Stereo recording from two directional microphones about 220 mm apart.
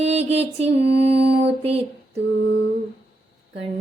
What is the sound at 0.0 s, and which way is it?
Music, 30° right (ahead or behind).